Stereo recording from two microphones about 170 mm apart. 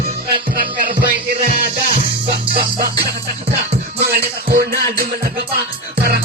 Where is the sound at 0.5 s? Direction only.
60° right (ahead or behind).